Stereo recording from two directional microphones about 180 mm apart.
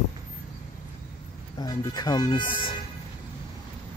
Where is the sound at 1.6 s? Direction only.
25° left (ahead or behind).